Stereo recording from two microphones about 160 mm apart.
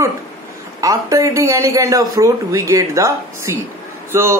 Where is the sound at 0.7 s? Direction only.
20° right (ahead or behind).